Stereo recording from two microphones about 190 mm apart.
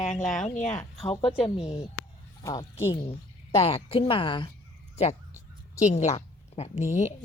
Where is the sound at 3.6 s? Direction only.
30° left (ahead or behind).